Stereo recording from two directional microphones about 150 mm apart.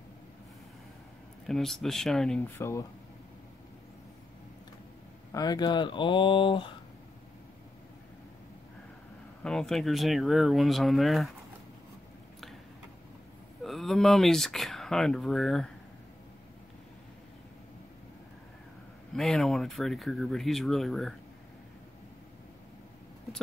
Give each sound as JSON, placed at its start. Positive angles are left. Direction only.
{"t": 1.5, "sound": "speech", "side_deg": 0}
{"t": 2.6, "sound": "speech", "side_deg": 20}
{"t": 5.3, "sound": "speech", "side_deg": 25}
{"t": 9.4, "sound": "speech", "side_deg": 5}
{"t": 13.7, "sound": "speech", "side_deg": 0}
{"t": 19.1, "sound": "speech", "side_deg": 5}